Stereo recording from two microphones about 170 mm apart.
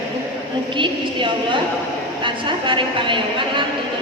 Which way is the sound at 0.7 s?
30° right (ahead or behind).